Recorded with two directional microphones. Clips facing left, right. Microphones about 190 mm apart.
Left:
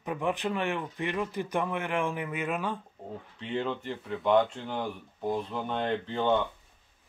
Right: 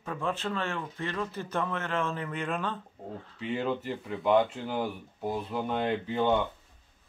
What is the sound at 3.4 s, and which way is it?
Speech, 5° right (ahead or behind).